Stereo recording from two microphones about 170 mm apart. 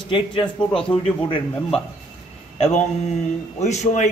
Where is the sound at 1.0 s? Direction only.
30° left (ahead or behind).